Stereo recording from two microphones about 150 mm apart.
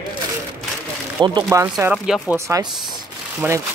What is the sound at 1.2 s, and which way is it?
Speech, 30° right (ahead or behind).